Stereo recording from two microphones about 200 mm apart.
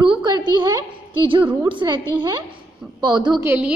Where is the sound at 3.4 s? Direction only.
5° right (ahead or behind).